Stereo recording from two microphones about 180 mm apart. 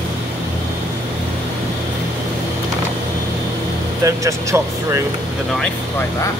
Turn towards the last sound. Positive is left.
turn(degrees=-15)  # may be behind; listen again after turning